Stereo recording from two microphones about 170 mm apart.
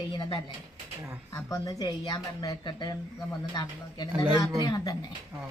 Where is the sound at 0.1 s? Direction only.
25° left (ahead or behind).